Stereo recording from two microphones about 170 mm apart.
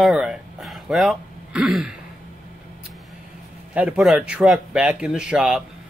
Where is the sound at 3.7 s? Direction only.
5° right (ahead or behind).